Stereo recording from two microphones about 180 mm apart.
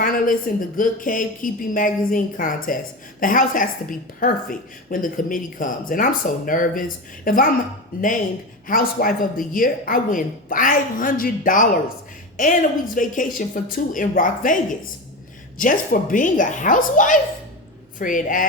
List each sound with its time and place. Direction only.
0.0 s a woman's voice: 50° left (ahead or behind)
8.6 s a woman's voice: 50° left (ahead or behind)